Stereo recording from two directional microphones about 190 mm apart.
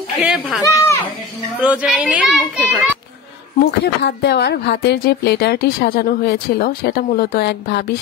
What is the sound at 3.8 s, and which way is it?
A woman's voice, 60° left (ahead or behind).